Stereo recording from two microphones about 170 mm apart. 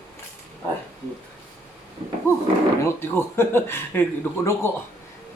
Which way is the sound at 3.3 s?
15° left (ahead or behind).